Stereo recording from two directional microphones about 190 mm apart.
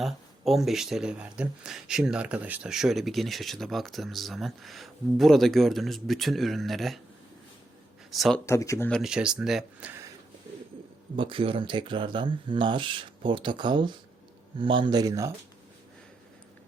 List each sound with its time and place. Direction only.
0.0 s speech: centre (ahead or behind)
8.1 s speech: centre (ahead or behind)
8.4 s speech: 15° left (ahead or behind)
8.9 s speech: centre (ahead or behind)
11.2 s speech: 25° right (ahead or behind)